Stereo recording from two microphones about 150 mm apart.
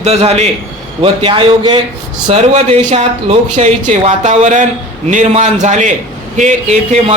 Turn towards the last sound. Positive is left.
turn(degrees=-45)  # may be behind; listen again after turning